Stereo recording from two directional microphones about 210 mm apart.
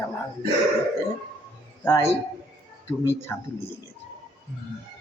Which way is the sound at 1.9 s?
15° left (ahead or behind).